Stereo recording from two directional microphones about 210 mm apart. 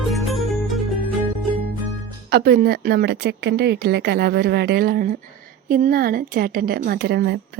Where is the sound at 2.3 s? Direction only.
50° right (ahead or behind).